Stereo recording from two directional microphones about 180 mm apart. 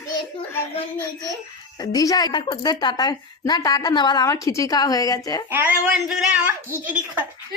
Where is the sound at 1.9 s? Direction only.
20° left (ahead or behind).